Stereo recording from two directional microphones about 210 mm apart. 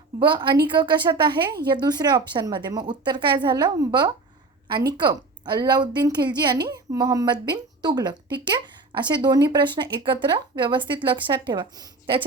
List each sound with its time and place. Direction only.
0.2 s a woman's voice: 20° right (ahead or behind)